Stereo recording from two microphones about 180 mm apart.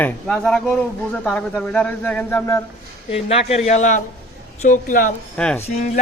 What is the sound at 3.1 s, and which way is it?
A man's voice, 35° left (ahead or behind).